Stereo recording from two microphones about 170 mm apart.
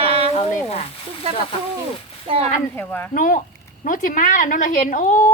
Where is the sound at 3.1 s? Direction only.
50° left (ahead or behind).